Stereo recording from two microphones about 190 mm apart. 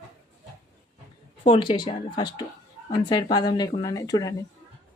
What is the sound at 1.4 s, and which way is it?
A woman's voice, 30° left (ahead or behind).